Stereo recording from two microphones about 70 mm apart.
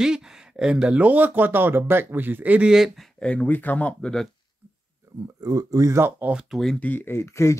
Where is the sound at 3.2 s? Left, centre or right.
Centre.